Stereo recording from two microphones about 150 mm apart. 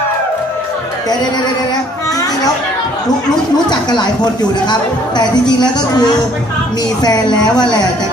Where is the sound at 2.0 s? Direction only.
25° left (ahead or behind).